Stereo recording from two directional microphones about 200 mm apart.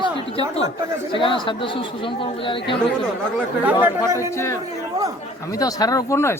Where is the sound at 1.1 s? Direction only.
25° left (ahead or behind).